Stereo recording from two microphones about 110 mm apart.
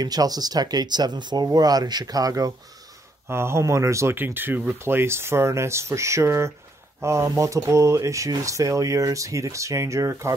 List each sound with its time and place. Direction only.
0.0 s speech: 35° right (ahead or behind)
3.3 s speech: 25° right (ahead or behind)